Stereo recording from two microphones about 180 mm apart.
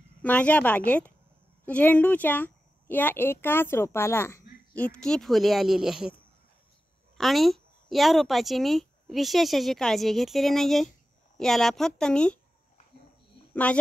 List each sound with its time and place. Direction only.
0.2 s speech: 10° left (ahead or behind)
7.2 s speech: centre (ahead or behind)
13.7 s speech: 5° left (ahead or behind)